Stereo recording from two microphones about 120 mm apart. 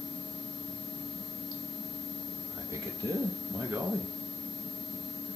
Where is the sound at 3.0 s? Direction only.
30° right (ahead or behind).